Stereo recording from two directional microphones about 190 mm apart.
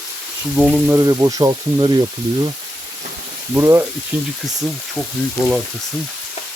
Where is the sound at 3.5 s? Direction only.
10° right (ahead or behind).